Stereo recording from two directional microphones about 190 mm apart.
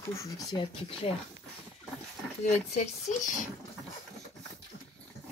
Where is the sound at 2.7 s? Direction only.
35° left (ahead or behind).